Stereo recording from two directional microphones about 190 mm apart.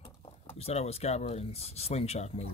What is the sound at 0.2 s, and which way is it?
Speech, 30° left (ahead or behind).